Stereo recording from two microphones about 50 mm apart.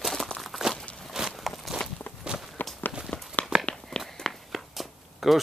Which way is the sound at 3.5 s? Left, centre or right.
Centre.